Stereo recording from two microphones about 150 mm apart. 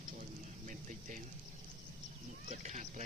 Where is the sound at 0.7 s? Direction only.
60° right (ahead or behind).